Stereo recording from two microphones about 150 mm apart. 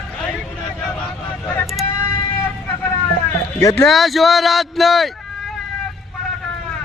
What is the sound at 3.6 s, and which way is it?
Speech, 20° left (ahead or behind).